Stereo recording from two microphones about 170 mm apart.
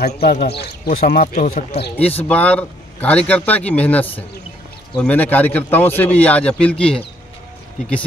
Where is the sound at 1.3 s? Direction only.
45° left (ahead or behind).